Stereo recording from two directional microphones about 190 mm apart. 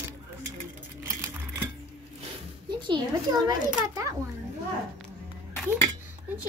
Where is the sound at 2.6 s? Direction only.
25° right (ahead or behind).